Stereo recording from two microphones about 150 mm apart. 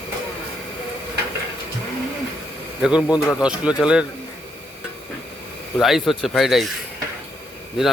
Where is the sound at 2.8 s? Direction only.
5° right (ahead or behind).